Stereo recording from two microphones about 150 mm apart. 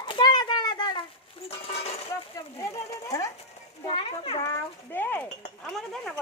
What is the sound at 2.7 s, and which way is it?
Speech, 20° left (ahead or behind).